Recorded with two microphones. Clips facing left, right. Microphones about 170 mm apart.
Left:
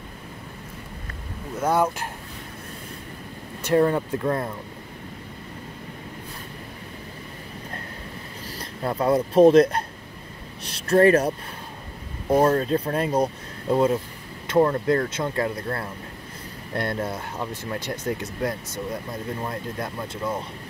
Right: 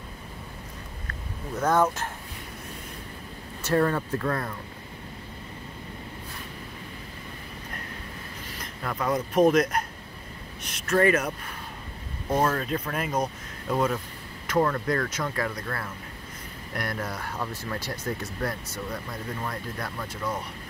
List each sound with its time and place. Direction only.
1.6 s speech: 10° left (ahead or behind)
3.6 s speech: 20° left (ahead or behind)
8.5 s speech: 35° left (ahead or behind)
12.4 s speech: 30° left (ahead or behind)